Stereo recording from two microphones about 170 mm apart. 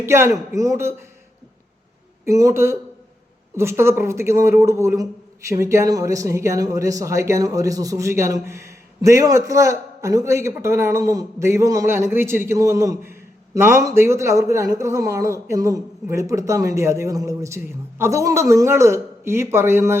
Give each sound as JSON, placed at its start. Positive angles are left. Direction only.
{"t": 0.0, "sound": "speech", "side_deg": -15}
{"t": 2.2, "sound": "speech", "side_deg": -15}